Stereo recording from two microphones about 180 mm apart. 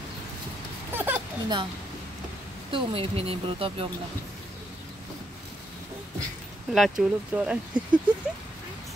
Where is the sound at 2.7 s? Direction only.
30° right (ahead or behind).